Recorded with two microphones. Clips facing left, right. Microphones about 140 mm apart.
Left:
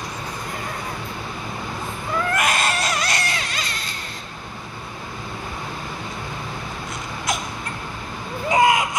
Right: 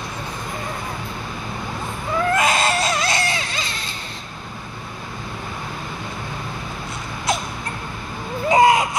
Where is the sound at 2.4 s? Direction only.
25° right (ahead or behind).